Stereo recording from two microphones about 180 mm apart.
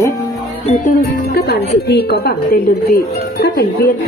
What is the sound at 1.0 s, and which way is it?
Speech, 60° left (ahead or behind).